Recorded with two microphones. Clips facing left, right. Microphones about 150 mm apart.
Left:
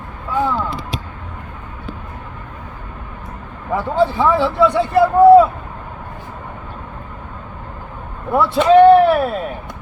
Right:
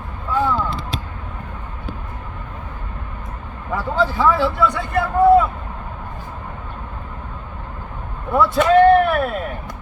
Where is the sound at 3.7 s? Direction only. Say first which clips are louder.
Left 4 dB; 25° left (ahead or behind).